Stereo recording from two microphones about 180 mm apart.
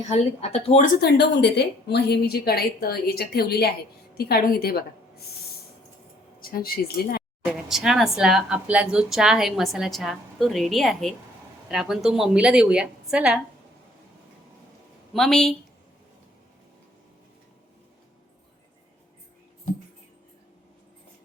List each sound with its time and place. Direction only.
0.1 s speech: 35° left (ahead or behind)
1.0 s a woman's voice: 70° left (ahead or behind)
6.4 s speech: 55° left (ahead or behind)
7.4 s speech: centre (ahead or behind)
15.1 s speech: 5° left (ahead or behind)